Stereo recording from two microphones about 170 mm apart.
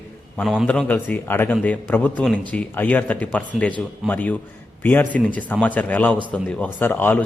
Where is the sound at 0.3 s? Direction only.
Centre (ahead or behind).